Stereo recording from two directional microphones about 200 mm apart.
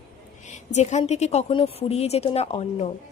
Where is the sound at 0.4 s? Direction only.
35° left (ahead or behind).